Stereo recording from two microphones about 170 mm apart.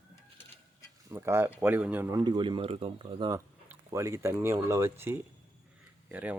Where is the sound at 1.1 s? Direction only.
15° right (ahead or behind).